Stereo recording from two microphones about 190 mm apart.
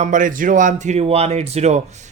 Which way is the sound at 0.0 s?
45° right (ahead or behind).